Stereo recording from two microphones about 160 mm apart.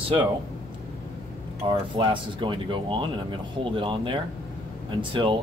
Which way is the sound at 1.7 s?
30° right (ahead or behind).